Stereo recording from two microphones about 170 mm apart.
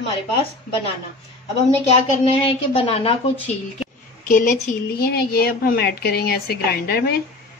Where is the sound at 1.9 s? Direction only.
35° left (ahead or behind).